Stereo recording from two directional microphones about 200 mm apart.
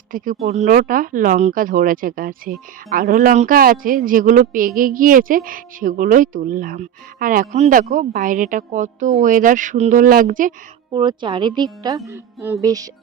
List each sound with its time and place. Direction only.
0.4 s a woman's voice: 35° right (ahead or behind)
10.9 s a woman's voice: 25° right (ahead or behind)
12.6 s music: 15° right (ahead or behind)